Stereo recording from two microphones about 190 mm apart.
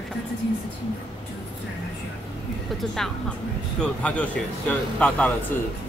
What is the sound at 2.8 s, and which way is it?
A man's voice, centre (ahead or behind).